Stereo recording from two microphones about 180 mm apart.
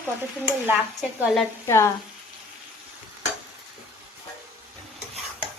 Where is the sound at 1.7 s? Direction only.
15° left (ahead or behind).